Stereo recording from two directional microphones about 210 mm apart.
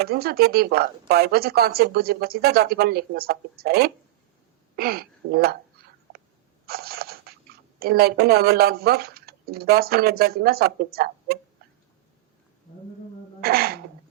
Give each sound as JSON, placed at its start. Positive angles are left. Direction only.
{"t": 0.0, "sound": "a woman's voice", "side_deg": -45}
{"t": 4.8, "sound": "a sound", "side_deg": -45}
{"t": 7.8, "sound": "a woman's voice", "side_deg": -45}
{"t": 13.4, "sound": "throat clearing", "side_deg": -45}